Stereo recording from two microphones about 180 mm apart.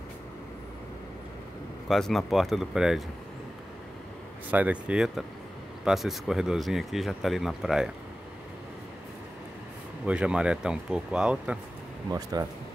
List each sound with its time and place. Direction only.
1.9 s speech: centre (ahead or behind)
4.5 s speech: 10° right (ahead or behind)
10.0 s speech: 5° right (ahead or behind)
12.1 s speech: 20° right (ahead or behind)